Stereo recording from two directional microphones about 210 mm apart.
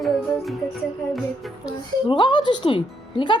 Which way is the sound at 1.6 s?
20° left (ahead or behind).